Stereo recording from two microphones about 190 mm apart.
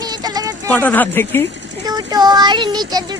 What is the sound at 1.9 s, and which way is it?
Child singing, 20° right (ahead or behind).